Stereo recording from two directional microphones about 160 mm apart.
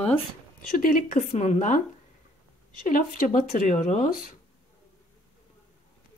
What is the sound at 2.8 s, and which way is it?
A woman's voice, 55° left (ahead or behind).